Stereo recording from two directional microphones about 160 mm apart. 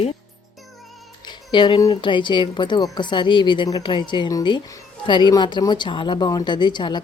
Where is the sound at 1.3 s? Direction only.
30° left (ahead or behind).